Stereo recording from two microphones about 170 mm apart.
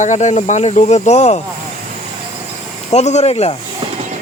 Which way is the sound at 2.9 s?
40° left (ahead or behind).